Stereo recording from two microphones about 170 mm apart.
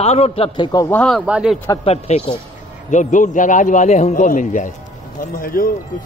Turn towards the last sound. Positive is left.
turn(degrees=60)  # may be behind; listen again after turning